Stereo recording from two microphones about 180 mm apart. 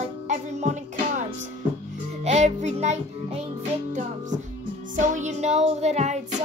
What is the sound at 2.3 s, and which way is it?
Music, 40° right (ahead or behind).